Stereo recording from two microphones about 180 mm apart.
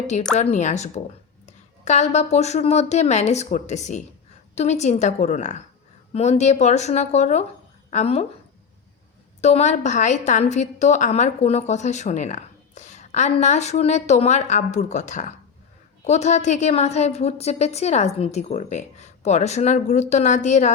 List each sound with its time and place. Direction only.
0.3 s a woman's voice: 40° left (ahead or behind)
9.4 s a woman's voice: 40° left (ahead or behind)